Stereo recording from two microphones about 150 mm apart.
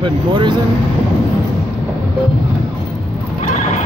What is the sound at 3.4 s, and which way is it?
Neigh, 50° left (ahead or behind).